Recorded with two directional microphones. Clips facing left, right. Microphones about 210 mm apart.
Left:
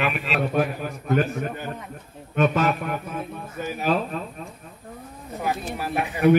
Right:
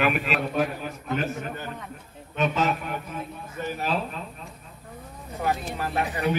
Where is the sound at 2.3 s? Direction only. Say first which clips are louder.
Left 4 dB; 50° left (ahead or behind).